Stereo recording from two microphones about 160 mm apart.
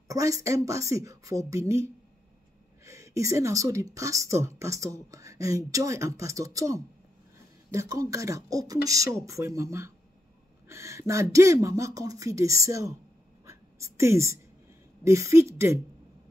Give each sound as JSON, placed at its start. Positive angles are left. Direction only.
{"t": 0.1, "sound": "speech", "side_deg": -20}
{"t": 13.5, "sound": "a sound", "side_deg": -20}
{"t": 15.0, "sound": "speech", "side_deg": -20}